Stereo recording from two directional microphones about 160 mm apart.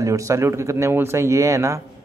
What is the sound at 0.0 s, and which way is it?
Speech, 20° right (ahead or behind).